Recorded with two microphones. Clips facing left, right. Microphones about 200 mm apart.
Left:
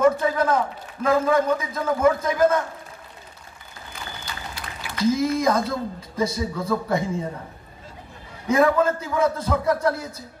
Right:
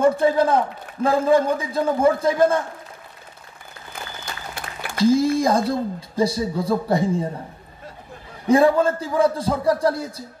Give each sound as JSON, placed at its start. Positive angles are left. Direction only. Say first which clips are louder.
{"t": 0.0, "sound": "speech", "louder": "right 2 dB", "side_deg": -30}
{"t": 4.9, "sound": "speech", "louder": "right 4 dB", "side_deg": -30}
{"t": 8.5, "sound": "speech", "louder": "right 3 dB", "side_deg": -30}